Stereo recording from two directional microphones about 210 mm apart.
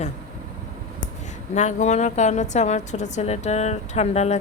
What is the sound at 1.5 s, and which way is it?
A woman's voice, 35° left (ahead or behind).